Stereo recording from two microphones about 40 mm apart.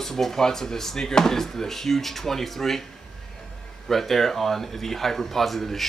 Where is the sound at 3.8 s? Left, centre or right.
Centre.